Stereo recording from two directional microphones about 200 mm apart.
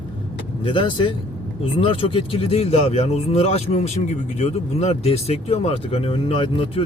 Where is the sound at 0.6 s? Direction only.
25° left (ahead or behind).